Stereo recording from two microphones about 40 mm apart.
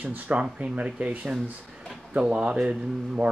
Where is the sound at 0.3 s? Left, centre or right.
Right.